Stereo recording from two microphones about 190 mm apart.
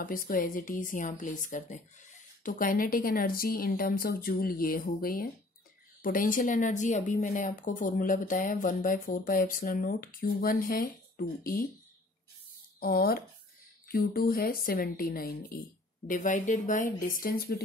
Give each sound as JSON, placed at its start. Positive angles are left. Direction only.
{"t": 0.0, "sound": "a woman's voice", "side_deg": 45}
{"t": 12.8, "sound": "a woman's voice", "side_deg": 50}